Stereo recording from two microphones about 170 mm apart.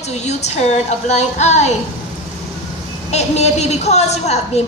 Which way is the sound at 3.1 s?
40° left (ahead or behind).